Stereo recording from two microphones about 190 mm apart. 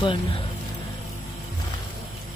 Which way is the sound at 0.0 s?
25° left (ahead or behind).